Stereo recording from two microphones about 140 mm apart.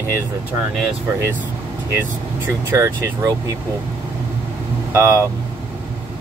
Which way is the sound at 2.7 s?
20° right (ahead or behind).